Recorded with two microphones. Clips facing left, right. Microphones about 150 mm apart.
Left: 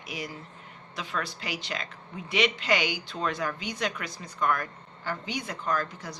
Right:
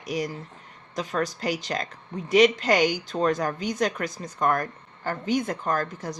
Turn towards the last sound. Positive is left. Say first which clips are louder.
# right 3 dB
turn(degrees=-45)  # may be behind; listen again after turning